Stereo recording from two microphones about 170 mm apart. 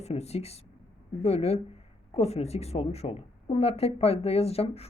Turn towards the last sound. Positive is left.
turn(degrees=35)  # may be behind; listen again after turning